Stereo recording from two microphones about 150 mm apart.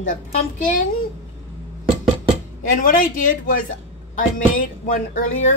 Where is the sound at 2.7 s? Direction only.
70° left (ahead or behind).